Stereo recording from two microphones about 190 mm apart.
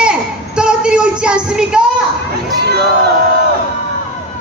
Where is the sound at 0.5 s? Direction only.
5° right (ahead or behind).